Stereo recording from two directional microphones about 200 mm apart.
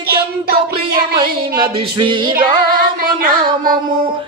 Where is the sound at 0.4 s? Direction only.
50° right (ahead or behind).